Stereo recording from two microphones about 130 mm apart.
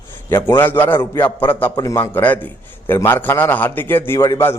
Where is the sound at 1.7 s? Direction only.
25° left (ahead or behind).